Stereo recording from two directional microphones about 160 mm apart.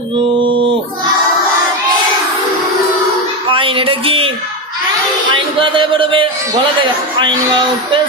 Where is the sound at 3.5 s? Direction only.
35° right (ahead or behind).